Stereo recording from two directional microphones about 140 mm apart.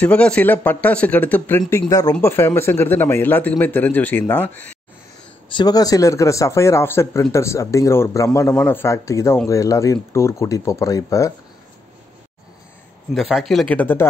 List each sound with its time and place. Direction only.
0.0 s a man's voice: 10° left (ahead or behind)
5.5 s speech: 30° left (ahead or behind)
13.1 s speech: centre (ahead or behind)